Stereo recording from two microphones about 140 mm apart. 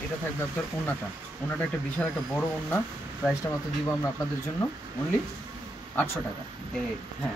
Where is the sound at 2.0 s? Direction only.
10° left (ahead or behind).